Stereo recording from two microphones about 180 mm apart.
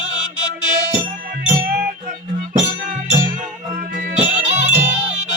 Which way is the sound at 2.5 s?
45° right (ahead or behind).